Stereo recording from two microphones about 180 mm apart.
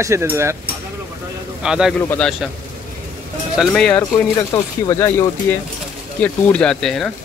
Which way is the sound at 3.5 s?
5° left (ahead or behind).